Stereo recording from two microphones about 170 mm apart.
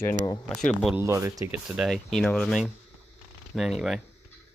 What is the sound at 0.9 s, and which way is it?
Speech, 15° right (ahead or behind).